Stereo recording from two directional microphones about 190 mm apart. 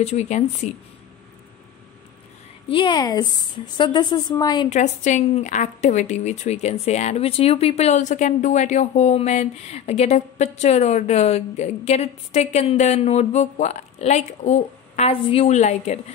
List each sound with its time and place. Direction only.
0.0 s a woman's voice: 35° left (ahead or behind)
2.7 s speech: 25° left (ahead or behind)
4.6 s a woman's voice: 40° left (ahead or behind)